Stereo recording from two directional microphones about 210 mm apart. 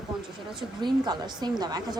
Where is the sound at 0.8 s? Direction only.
20° right (ahead or behind).